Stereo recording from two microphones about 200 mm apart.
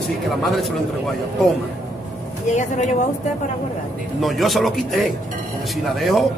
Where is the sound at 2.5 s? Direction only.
35° left (ahead or behind).